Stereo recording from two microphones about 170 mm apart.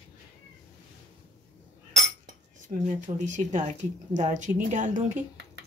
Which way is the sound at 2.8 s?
45° right (ahead or behind).